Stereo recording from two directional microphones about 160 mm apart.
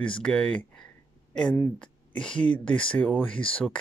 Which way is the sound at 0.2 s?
5° left (ahead or behind).